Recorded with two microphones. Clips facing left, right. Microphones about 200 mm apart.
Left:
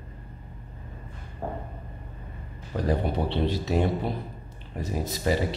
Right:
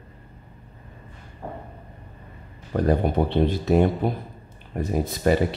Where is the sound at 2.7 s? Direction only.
50° right (ahead or behind).